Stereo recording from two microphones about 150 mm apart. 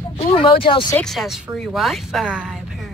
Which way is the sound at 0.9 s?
Centre (ahead or behind).